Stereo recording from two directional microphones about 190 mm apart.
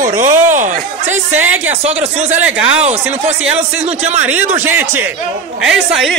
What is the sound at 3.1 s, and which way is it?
Speech, 35° right (ahead or behind).